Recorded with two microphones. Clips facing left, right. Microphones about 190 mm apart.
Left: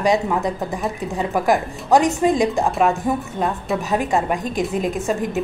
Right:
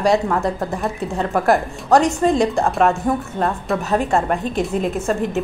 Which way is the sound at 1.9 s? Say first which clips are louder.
Right 1 dB; centre (ahead or behind).